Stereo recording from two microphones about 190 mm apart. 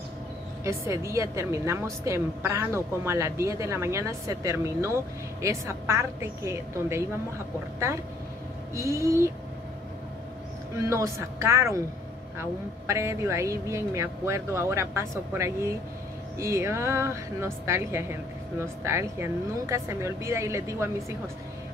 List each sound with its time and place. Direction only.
0.7 s a woman's voice: 15° right (ahead or behind)
8.7 s a woman's voice: 15° right (ahead or behind)
10.9 s a woman's voice: 15° right (ahead or behind)